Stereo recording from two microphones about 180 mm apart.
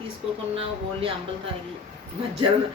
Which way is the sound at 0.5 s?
30° right (ahead or behind).